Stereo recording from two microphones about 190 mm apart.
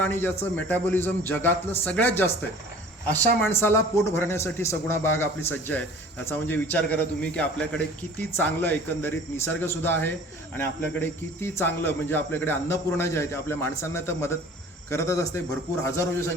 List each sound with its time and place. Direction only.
0.0 s speech: 10° left (ahead or behind)
3.4 s speech: 10° left (ahead or behind)